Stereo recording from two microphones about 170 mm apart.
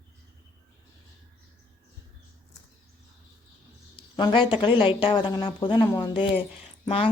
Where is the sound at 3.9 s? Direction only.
30° left (ahead or behind).